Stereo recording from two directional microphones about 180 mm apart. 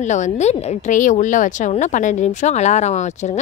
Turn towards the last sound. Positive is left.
turn(degrees=40)  # may be behind; listen again after turning